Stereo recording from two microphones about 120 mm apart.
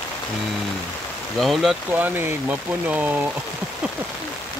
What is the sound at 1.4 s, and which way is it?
Speech, centre (ahead or behind).